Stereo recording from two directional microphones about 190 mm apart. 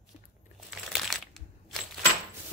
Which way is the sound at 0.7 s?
Centre (ahead or behind).